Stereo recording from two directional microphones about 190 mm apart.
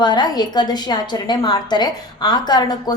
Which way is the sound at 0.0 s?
25° left (ahead or behind).